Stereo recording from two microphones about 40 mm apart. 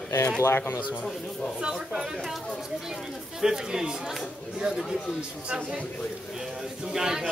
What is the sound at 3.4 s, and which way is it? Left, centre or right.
Speech, centre.